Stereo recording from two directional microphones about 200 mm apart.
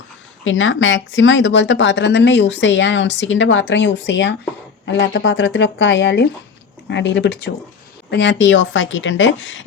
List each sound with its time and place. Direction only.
0.4 s a woman's voice: 75° left (ahead or behind)